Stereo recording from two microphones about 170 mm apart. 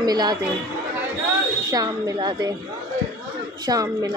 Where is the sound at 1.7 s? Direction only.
25° right (ahead or behind).